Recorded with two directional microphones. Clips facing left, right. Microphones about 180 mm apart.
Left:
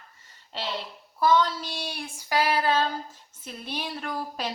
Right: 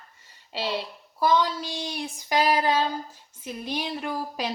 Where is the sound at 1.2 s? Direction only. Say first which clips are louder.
Even; 15° right (ahead or behind).